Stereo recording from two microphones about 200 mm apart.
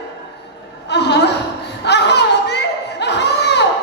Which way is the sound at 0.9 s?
55° left (ahead or behind).